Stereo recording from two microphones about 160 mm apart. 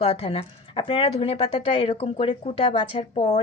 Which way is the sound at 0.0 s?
35° left (ahead or behind).